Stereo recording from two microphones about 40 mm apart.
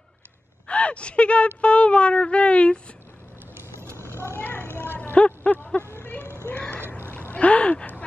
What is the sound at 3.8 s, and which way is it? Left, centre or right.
Vehicle, right.